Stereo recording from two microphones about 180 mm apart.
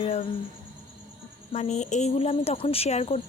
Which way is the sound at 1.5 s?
40° left (ahead or behind).